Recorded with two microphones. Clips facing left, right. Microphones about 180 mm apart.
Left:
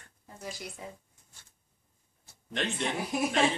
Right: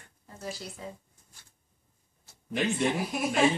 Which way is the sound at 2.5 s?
5° right (ahead or behind).